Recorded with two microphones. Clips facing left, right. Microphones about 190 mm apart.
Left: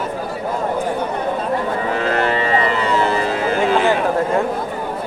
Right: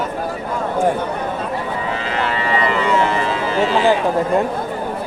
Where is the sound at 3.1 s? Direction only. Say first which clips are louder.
Left 1 dB; 40° left (ahead or behind).